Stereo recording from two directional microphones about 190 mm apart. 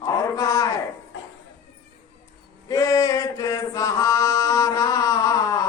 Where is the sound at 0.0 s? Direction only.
20° left (ahead or behind).